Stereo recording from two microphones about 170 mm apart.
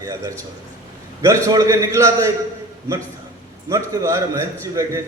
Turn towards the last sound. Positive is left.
turn(degrees=-20)  # may be behind; listen again after turning